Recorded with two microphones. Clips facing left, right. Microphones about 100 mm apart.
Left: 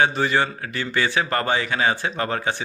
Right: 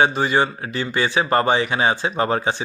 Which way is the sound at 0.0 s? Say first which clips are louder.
Right 2 dB; 20° right (ahead or behind).